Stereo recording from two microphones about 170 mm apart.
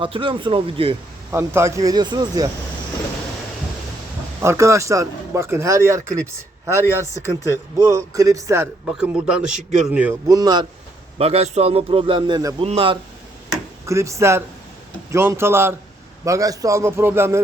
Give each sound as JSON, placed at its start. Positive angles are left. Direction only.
{"t": 0.0, "sound": "a man's voice", "side_deg": -30}
{"t": 1.3, "sound": "speech", "side_deg": -15}
{"t": 4.4, "sound": "speech", "side_deg": -15}
{"t": 9.0, "sound": "a man's voice", "side_deg": -5}
{"t": 10.2, "sound": "speech", "side_deg": -20}
{"t": 11.2, "sound": "a man's voice", "side_deg": -35}
{"t": 13.8, "sound": "speech", "side_deg": -15}